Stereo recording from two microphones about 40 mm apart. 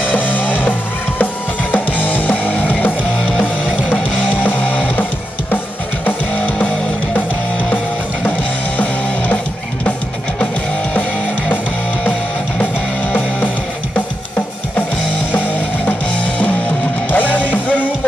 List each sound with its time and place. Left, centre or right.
0.1 s music: left
4.3 s music: left
6.0 s music: left
17.1 s music: left